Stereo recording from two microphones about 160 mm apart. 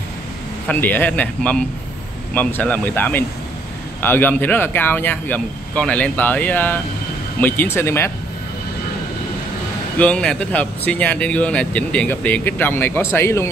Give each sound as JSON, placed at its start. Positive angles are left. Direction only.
{"t": 0.7, "sound": "speech", "side_deg": 10}
{"t": 9.9, "sound": "speech", "side_deg": 5}